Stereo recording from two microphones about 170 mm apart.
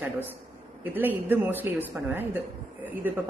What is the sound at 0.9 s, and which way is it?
A woman's voice, 10° right (ahead or behind).